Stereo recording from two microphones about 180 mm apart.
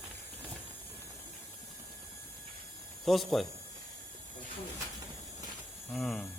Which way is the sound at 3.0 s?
Centre (ahead or behind).